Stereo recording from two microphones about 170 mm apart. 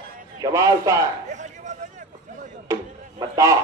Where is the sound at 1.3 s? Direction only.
45° right (ahead or behind).